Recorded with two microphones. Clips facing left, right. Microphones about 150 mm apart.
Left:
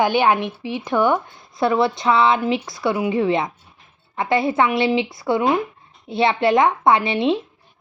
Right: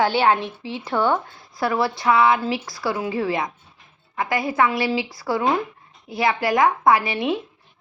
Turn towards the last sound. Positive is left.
turn(degrees=25)  # may be behind; listen again after turning